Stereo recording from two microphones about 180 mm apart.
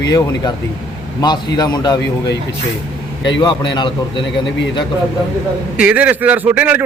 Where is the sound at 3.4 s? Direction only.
25° left (ahead or behind).